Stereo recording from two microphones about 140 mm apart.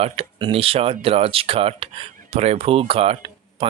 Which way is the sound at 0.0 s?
40° right (ahead or behind).